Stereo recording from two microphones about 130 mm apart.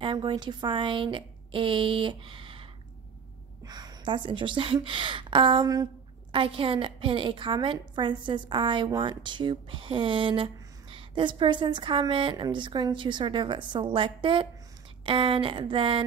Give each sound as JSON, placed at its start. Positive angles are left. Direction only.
{"t": 0.0, "sound": "a woman's voice", "side_deg": -40}
{"t": 3.6, "sound": "a woman's voice", "side_deg": -30}